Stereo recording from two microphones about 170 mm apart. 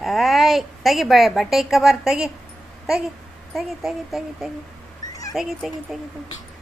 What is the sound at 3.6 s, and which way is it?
Speech, centre (ahead or behind).